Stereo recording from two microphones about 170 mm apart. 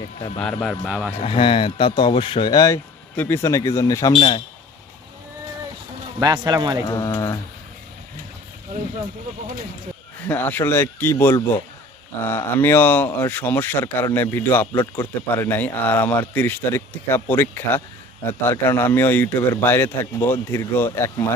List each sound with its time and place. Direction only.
0.3 s a man's voice: 5° left (ahead or behind)
0.9 s a man's voice: 5° right (ahead or behind)
1.1 s speech: 35° left (ahead or behind); by 4.1 s 20° left (ahead or behind)
4.1 s speech: 35° left (ahead or behind)
6.1 s a man's voice: 25° right (ahead or behind)
6.8 s speech: 20° left (ahead or behind)
10.2 s speech: 10° left (ahead or behind)